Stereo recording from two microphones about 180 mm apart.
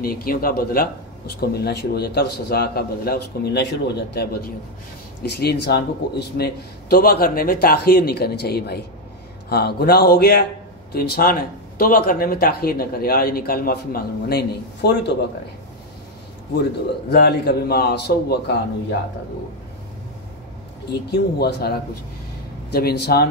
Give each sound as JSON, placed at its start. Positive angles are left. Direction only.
{"t": 0.0, "sound": "a man's voice", "side_deg": 55}
{"t": 17.1, "sound": "a man's voice", "side_deg": 60}
{"t": 21.1, "sound": "a man's voice", "side_deg": 65}